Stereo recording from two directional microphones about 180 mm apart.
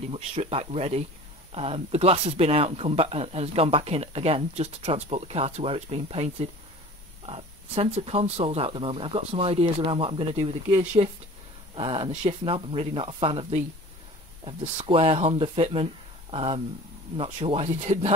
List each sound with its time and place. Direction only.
0.1 s speech: 35° right (ahead or behind)
14.9 s speech: 30° right (ahead or behind)